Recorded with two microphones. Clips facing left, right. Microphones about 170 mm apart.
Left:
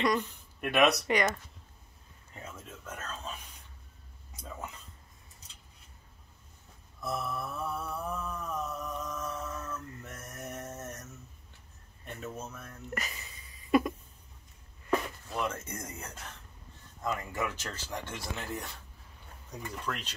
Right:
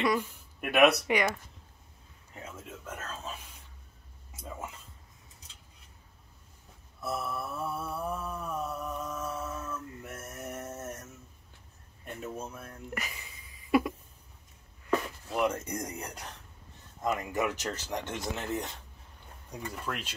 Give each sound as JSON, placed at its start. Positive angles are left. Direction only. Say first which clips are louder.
{"t": 0.0, "sound": "speech", "louder": "even", "side_deg": -5}
{"t": 7.0, "sound": "mantra", "louder": "right 1 dB", "side_deg": -5}
{"t": 12.0, "sound": "a sound", "louder": "right 2 dB", "side_deg": -10}
{"t": 15.2, "sound": "speech", "louder": "right 5 dB", "side_deg": -15}